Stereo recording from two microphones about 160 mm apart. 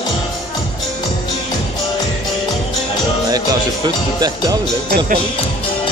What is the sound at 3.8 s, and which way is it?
Speech, 25° right (ahead or behind).